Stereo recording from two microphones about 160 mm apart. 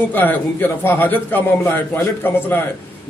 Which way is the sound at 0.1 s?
10° left (ahead or behind).